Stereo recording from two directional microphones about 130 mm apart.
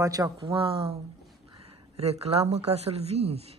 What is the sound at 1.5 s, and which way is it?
Speech, 50° right (ahead or behind).